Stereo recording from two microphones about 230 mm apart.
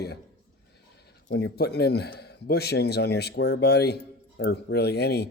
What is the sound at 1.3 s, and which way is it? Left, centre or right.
Speech, left.